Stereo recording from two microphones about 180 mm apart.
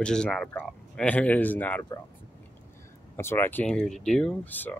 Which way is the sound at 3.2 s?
10° left (ahead or behind).